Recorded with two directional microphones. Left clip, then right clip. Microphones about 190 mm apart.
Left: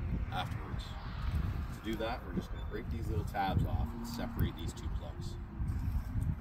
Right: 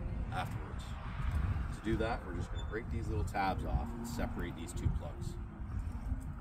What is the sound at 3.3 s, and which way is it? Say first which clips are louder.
Speech: even; 20° left (ahead or behind).